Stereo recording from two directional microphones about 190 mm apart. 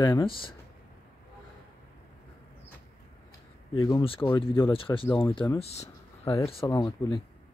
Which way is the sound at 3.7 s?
25° left (ahead or behind).